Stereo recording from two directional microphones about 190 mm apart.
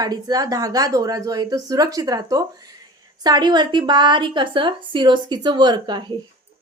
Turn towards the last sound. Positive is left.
turn(degrees=-25)  # may be behind; listen again after turning